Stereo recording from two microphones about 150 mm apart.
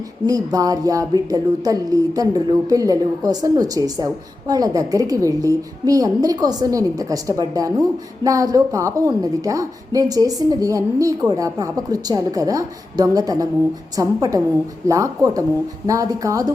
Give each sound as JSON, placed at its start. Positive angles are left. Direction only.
{"t": 0.3, "sound": "speech", "side_deg": -25}